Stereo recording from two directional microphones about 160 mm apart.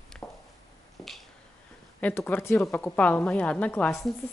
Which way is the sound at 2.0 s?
10° left (ahead or behind).